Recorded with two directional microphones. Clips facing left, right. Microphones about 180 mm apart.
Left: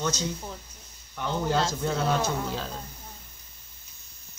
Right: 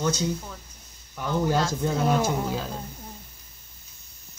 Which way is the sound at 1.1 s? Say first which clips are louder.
Right 2 dB; 10° right (ahead or behind).